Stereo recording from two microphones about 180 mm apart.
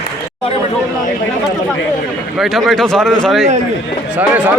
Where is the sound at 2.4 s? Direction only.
Centre (ahead or behind).